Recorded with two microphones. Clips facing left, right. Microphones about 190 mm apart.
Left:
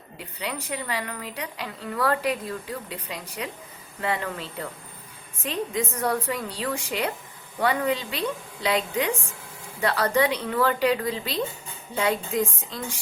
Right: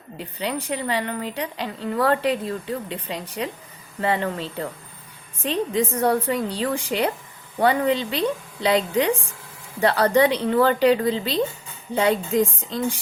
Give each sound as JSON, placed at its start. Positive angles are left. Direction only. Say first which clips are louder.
{"t": 0.2, "sound": "a woman's voice", "louder": "right 6 dB", "side_deg": -30}